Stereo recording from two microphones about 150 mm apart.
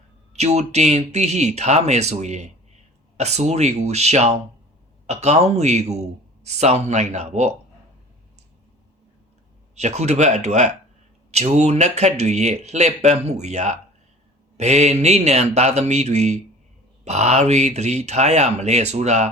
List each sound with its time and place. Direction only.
0.3 s speech: 45° right (ahead or behind)
9.7 s speech: 45° right (ahead or behind)